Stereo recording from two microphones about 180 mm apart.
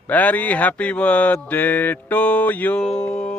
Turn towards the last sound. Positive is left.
turn(degrees=5)  # may be behind; listen again after turning